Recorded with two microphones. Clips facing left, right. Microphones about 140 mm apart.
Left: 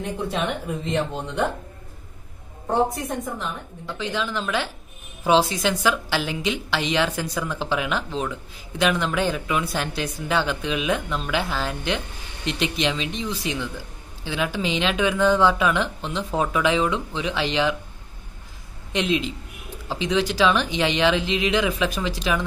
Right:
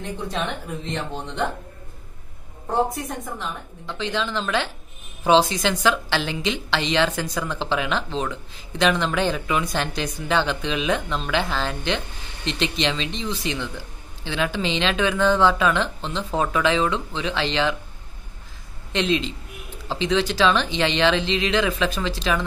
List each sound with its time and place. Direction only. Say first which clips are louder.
2.9 s a woman's voice: left 2 dB; centre (ahead or behind)
18.9 s a man's voice: right 1 dB; 10° left (ahead or behind)